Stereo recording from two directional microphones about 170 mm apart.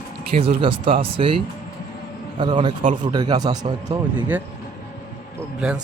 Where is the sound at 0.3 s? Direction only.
30° right (ahead or behind).